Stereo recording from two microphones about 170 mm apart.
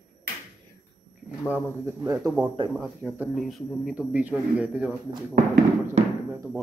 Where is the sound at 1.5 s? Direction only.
15° right (ahead or behind).